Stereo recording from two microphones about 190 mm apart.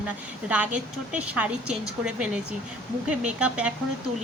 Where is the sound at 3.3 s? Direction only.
5° right (ahead or behind).